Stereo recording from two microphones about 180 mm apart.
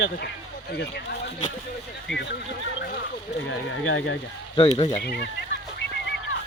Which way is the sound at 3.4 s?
90° left.